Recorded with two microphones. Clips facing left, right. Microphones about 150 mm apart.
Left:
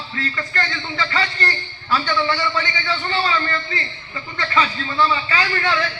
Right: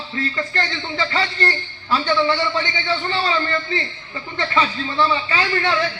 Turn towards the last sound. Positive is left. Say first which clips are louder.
# right 1 dB
turn(degrees=-25)  # may be behind; listen again after turning